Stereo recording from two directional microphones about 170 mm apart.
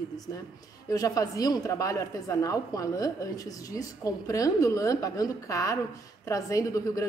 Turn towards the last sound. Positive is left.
turn(degrees=20)  # may be behind; listen again after turning